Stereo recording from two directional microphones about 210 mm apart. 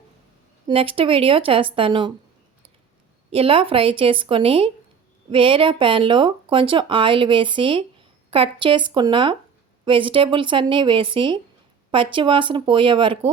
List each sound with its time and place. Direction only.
0.7 s speech: 25° right (ahead or behind)
3.2 s speech: 25° right (ahead or behind)